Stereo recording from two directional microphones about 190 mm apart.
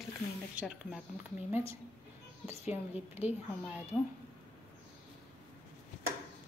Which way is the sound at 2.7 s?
10° right (ahead or behind).